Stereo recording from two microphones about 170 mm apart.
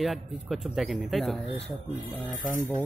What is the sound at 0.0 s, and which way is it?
Speech, centre (ahead or behind).